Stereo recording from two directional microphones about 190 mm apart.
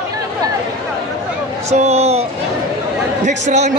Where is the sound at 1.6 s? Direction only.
35° right (ahead or behind).